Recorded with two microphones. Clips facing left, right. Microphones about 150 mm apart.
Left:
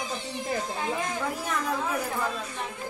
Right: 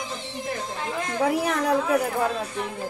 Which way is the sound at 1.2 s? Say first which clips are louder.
Right 8 dB; 75° right (ahead or behind).